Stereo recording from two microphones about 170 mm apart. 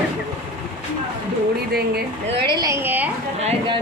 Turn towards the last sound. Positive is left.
turn(degrees=-10)  # may be behind; listen again after turning